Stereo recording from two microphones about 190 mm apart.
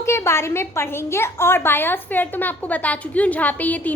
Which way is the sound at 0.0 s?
15° left (ahead or behind).